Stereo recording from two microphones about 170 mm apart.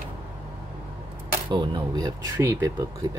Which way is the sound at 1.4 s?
25° right (ahead or behind).